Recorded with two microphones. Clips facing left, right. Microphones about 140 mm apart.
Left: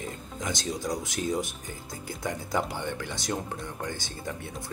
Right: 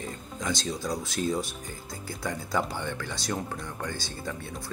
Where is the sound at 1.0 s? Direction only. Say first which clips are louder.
Right 1 dB; 20° left (ahead or behind).